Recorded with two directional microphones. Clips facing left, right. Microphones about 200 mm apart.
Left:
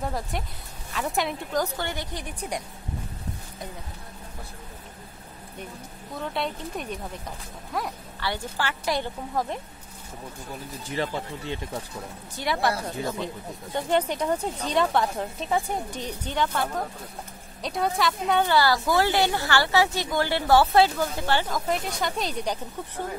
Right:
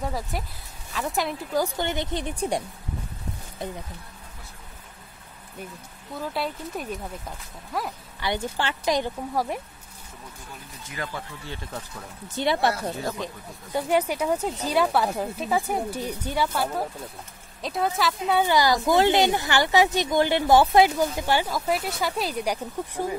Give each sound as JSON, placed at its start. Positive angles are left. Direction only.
{"t": 0.0, "sound": "speech", "side_deg": 0}
{"t": 1.8, "sound": "a woman's voice", "side_deg": -20}
{"t": 6.1, "sound": "speech", "side_deg": -5}
{"t": 8.2, "sound": "speech", "side_deg": -20}
{"t": 10.8, "sound": "speech", "side_deg": 30}
{"t": 12.4, "sound": "a woman's voice", "side_deg": -25}
{"t": 12.9, "sound": "speech", "side_deg": 20}
{"t": 13.7, "sound": "speech", "side_deg": -10}
{"t": 18.4, "sound": "speech", "side_deg": -15}